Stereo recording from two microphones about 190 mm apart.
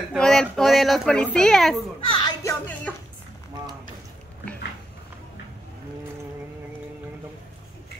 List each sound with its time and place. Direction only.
0.1 s speech: 5° left (ahead or behind)
2.0 s a sound: 25° left (ahead or behind)
2.9 s music: 5° left (ahead or behind)